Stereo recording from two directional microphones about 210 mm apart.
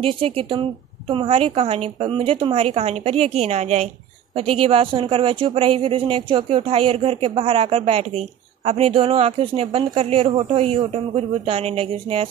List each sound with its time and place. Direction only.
0.0 s speech: 25° right (ahead or behind)